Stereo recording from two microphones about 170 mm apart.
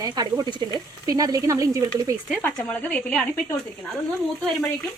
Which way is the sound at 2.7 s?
10° left (ahead or behind).